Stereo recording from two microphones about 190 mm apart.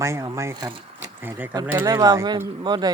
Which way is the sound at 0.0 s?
15° right (ahead or behind).